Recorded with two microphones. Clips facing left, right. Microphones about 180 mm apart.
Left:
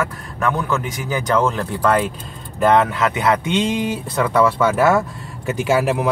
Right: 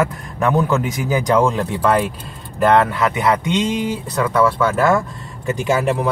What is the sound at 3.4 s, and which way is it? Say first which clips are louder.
Speech: even; 25° left (ahead or behind).